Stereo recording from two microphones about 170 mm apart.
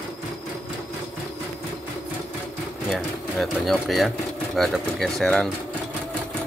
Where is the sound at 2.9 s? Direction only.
Centre (ahead or behind).